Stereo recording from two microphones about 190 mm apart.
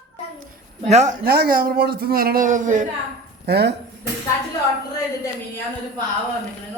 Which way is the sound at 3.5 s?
60° right (ahead or behind).